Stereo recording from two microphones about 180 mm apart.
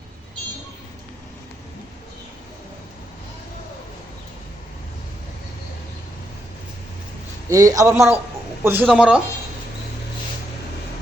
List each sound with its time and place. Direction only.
7.5 s a man's voice: 20° right (ahead or behind)